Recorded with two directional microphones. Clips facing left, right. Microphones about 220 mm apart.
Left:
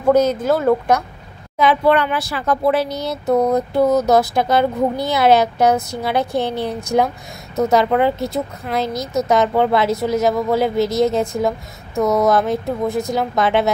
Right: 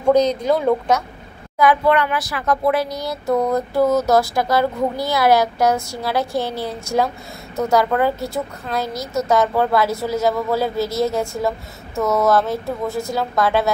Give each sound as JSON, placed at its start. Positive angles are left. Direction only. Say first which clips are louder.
{"t": 0.1, "sound": "speech", "louder": "left 1 dB", "side_deg": 5}
{"t": 1.6, "sound": "speech", "louder": "left 1 dB", "side_deg": 25}